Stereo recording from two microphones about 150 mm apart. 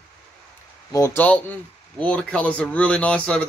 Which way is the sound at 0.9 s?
15° left (ahead or behind).